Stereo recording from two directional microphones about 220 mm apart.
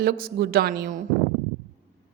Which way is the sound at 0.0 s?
45° right (ahead or behind).